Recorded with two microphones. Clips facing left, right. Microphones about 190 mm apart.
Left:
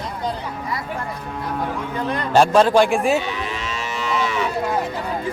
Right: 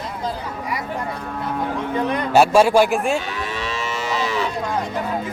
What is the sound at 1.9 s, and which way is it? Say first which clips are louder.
A man's voice: right 1 dB; 20° right (ahead or behind).